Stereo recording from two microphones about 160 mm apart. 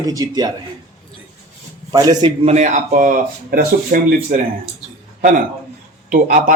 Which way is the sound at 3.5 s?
65° right (ahead or behind).